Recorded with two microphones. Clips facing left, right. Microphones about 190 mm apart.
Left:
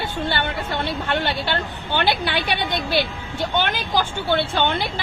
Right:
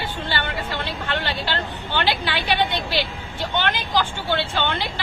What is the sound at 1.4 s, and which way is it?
A woman's voice, 50° left (ahead or behind).